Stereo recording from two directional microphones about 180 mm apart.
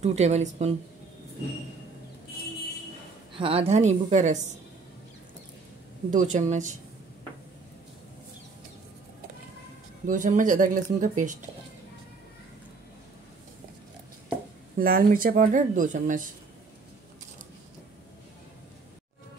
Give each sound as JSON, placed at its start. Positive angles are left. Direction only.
{"t": 0.0, "sound": "a woman's voice", "side_deg": -40}
{"t": 3.3, "sound": "a woman's voice", "side_deg": -30}
{"t": 6.1, "sound": "speech", "side_deg": -45}
{"t": 10.0, "sound": "speech", "side_deg": -45}
{"t": 14.8, "sound": "speech", "side_deg": -55}